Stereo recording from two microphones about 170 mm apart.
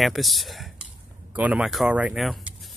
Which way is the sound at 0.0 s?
Centre (ahead or behind).